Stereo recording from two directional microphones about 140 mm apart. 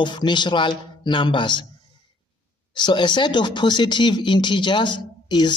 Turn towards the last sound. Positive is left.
turn(degrees=30)  # may be behind; listen again after turning